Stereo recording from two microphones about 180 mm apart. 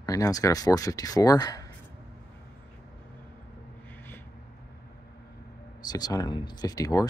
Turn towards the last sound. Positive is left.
turn(degrees=20)  # may be behind; listen again after turning